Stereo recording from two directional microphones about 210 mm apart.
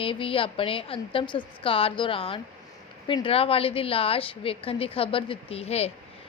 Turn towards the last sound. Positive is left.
turn(degrees=30)  # may be behind; listen again after turning